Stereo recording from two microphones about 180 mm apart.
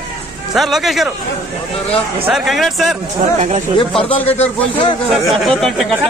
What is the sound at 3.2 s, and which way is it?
Speech, 35° right (ahead or behind).